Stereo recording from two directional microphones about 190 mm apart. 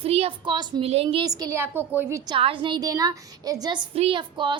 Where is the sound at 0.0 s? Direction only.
30° right (ahead or behind).